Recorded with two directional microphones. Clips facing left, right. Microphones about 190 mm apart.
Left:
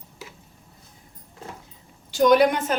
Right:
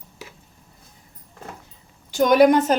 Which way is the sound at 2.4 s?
40° right (ahead or behind).